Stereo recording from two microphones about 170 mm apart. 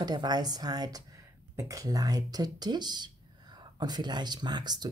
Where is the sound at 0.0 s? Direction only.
25° right (ahead or behind).